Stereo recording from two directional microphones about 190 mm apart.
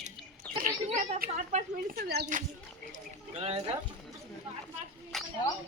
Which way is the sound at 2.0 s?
55° right (ahead or behind).